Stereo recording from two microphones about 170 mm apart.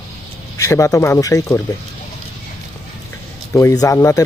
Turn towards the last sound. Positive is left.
turn(degrees=20)  # may be behind; listen again after turning